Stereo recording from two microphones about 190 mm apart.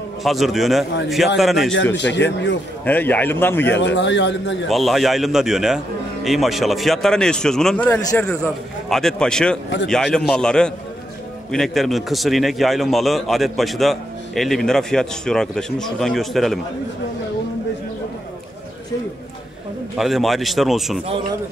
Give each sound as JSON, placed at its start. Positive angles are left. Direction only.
{"t": 0.2, "sound": "a man's voice", "side_deg": 0}
{"t": 2.0, "sound": "a man's voice", "side_deg": 70}
{"t": 2.8, "sound": "a man's voice", "side_deg": 10}
{"t": 3.7, "sound": "a man's voice", "side_deg": 70}
{"t": 4.6, "sound": "a man's voice", "side_deg": 0}
{"t": 20.0, "sound": "a man's voice", "side_deg": 0}